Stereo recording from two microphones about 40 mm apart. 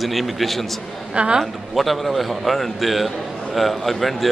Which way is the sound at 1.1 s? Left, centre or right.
Right.